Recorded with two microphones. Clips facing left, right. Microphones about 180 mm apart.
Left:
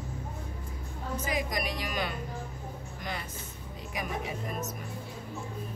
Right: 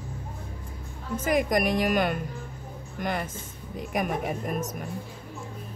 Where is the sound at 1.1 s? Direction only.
50° right (ahead or behind).